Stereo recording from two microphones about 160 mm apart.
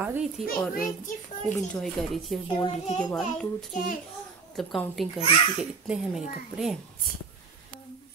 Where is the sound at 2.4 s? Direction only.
35° left (ahead or behind).